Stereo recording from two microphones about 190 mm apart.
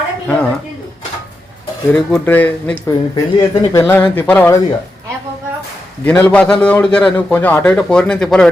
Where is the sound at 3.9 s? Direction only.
10° left (ahead or behind).